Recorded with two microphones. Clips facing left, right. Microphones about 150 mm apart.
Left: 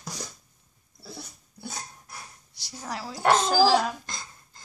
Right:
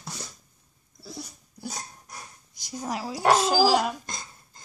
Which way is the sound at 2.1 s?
20° right (ahead or behind).